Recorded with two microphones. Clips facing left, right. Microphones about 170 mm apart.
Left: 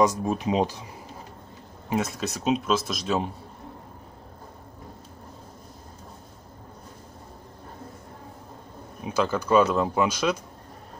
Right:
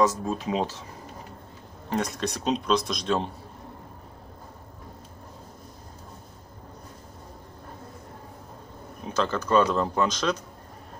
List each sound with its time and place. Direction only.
0.0 s speech: 15° left (ahead or behind)
1.9 s speech: 5° left (ahead or behind)
9.0 s speech: 10° left (ahead or behind)